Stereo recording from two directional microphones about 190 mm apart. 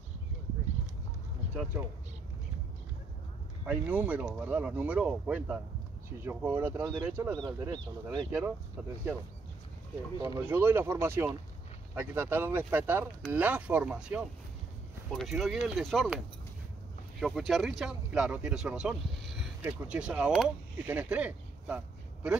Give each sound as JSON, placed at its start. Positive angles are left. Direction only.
{"t": 3.6, "sound": "speech", "side_deg": -5}
{"t": 7.3, "sound": "speech", "side_deg": -20}
{"t": 8.3, "sound": "speech", "side_deg": -10}
{"t": 10.2, "sound": "speech", "side_deg": -15}
{"t": 17.2, "sound": "speech", "side_deg": 0}